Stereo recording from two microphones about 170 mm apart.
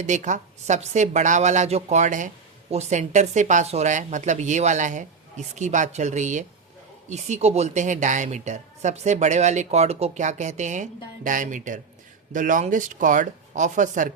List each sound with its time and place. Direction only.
0.0 s a woman's voice: 45° right (ahead or behind)